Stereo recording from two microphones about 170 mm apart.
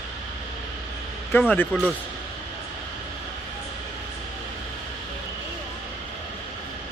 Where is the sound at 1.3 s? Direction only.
10° left (ahead or behind).